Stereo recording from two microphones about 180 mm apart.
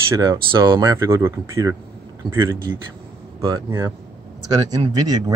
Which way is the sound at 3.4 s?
20° right (ahead or behind).